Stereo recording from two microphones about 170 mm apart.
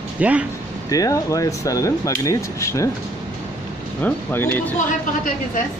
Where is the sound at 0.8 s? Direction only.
20° left (ahead or behind).